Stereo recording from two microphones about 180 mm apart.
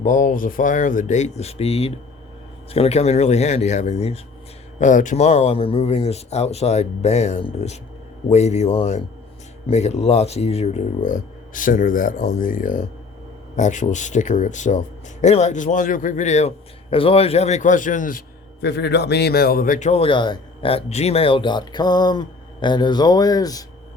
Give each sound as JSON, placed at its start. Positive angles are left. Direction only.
{"t": 0.0, "sound": "speech", "side_deg": 45}
{"t": 18.6, "sound": "a man's voice", "side_deg": 70}
{"t": 19.9, "sound": "speech", "side_deg": 30}